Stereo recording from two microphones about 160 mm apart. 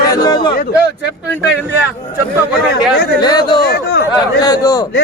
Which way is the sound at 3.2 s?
25° left (ahead or behind).